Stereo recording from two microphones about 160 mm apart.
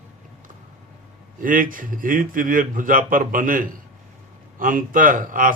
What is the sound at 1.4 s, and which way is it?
A man's voice, 55° right (ahead or behind).